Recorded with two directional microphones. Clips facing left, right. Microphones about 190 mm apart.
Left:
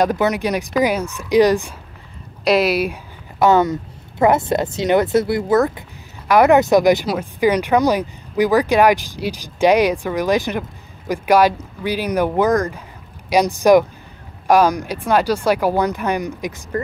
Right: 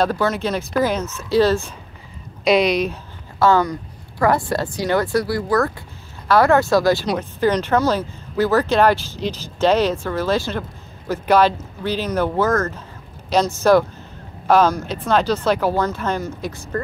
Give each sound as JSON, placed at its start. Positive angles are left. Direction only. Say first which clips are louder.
{"t": 0.0, "sound": "speech", "louder": "left 2 dB", "side_deg": 15}
{"t": 2.4, "sound": "a woman's voice", "louder": "even", "side_deg": 5}